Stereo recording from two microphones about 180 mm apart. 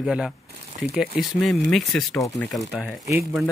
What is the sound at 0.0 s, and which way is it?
Speech, 5° right (ahead or behind).